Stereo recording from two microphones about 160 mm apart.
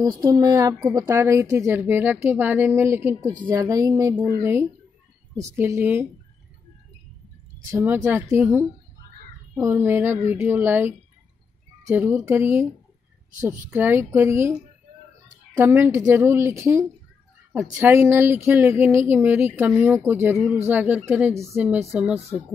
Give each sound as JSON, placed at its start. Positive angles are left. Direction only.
{"t": 0.0, "sound": "speech", "side_deg": -20}
{"t": 7.6, "sound": "speech", "side_deg": -15}
{"t": 15.5, "sound": "speech", "side_deg": -15}